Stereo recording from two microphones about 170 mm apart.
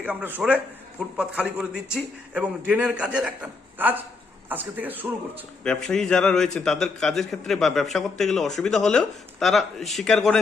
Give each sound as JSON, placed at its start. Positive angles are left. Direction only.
{"t": 0.0, "sound": "a man's voice", "side_deg": -10}
{"t": 5.6, "sound": "a man's voice", "side_deg": 5}